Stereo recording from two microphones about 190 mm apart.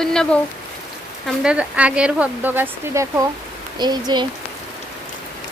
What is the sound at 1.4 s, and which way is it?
Speech, 5° right (ahead or behind).